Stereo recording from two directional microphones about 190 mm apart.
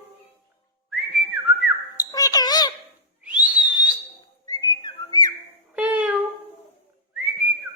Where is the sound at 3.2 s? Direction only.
5° right (ahead or behind).